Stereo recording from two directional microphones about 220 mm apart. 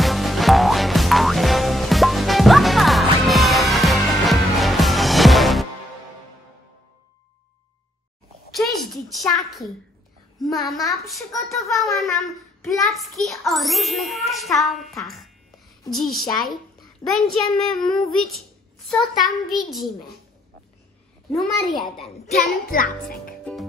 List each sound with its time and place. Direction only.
0.0 s music: centre (ahead or behind)
8.5 s a sound: centre (ahead or behind)
10.5 s a child's voice: centre (ahead or behind)
21.3 s a child's voice: centre (ahead or behind)
22.7 s a child's voice: 40° left (ahead or behind)